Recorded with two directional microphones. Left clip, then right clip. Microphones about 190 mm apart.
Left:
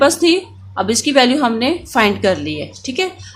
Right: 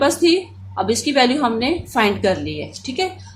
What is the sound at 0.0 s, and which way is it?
A woman's voice, 35° left (ahead or behind).